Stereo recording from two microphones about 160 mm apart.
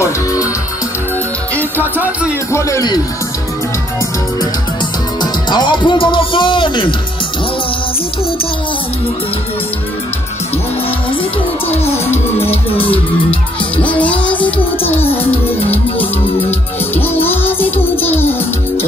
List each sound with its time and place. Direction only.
0.0 s music: 20° left (ahead or behind)
1.6 s music: 10° right (ahead or behind)
2.5 s speech: 20° left (ahead or behind)
5.2 s music: 30° left (ahead or behind)
12.4 s music: 35° left (ahead or behind)
13.8 s music: 10° left (ahead or behind)
16.3 s music: 10° left (ahead or behind)